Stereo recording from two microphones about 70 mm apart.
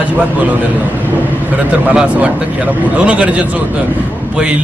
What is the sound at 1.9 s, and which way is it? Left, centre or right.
Speech, centre.